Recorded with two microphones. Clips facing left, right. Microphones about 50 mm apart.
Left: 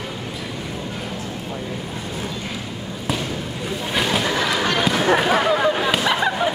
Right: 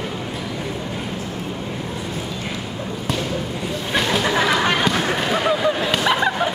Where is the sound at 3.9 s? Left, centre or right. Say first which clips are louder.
Right 1 dB; centre.